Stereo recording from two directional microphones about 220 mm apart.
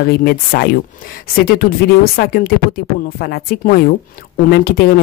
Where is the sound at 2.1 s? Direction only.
45° left (ahead or behind).